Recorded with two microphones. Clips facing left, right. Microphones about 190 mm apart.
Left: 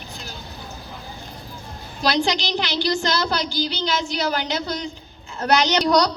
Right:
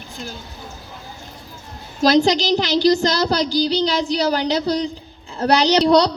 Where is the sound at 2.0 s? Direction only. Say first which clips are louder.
Right 7 dB; 40° right (ahead or behind).